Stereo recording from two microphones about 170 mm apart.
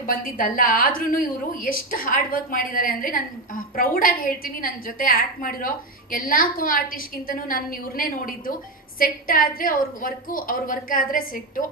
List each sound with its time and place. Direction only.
0.0 s a woman's voice: 55° left (ahead or behind)